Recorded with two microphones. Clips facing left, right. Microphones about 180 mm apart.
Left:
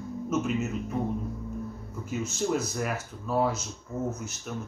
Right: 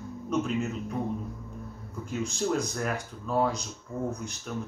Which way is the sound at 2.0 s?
5° left (ahead or behind).